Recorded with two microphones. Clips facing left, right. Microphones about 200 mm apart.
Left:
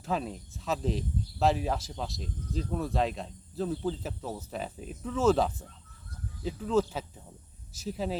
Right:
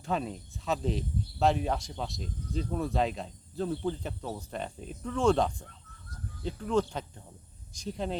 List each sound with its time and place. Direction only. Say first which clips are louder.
0.0 s speech: even; centre (ahead or behind)